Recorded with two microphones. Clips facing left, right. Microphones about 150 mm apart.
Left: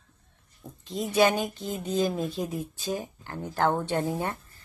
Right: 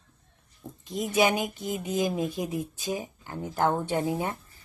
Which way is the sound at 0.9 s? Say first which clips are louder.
Left 1 dB; 15° right (ahead or behind).